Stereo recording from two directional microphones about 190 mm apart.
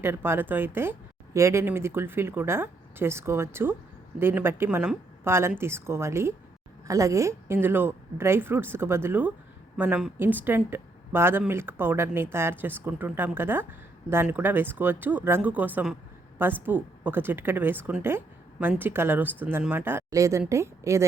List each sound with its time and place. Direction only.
0.0 s speech: 10° right (ahead or behind)